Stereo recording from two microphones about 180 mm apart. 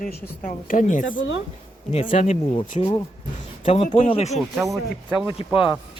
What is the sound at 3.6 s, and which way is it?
Speech, 40° left (ahead or behind).